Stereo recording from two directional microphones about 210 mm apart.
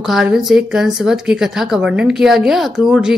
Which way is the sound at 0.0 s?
Centre (ahead or behind).